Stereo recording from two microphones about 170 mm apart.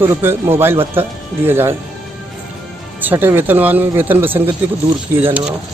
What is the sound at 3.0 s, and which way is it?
Speech, 10° right (ahead or behind).